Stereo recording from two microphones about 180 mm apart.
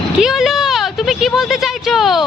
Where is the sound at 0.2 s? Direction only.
Centre (ahead or behind).